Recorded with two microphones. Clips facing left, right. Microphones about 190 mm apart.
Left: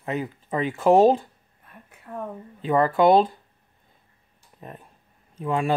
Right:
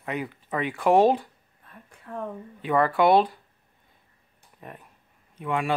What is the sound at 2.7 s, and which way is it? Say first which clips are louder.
Speech: left 2 dB; 25° left (ahead or behind).